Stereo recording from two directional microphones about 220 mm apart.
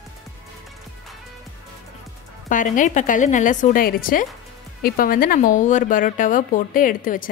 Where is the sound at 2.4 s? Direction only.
35° left (ahead or behind).